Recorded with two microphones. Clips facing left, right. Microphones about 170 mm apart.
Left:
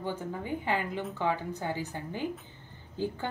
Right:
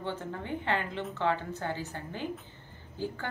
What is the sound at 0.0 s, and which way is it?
A woman's voice, 10° left (ahead or behind).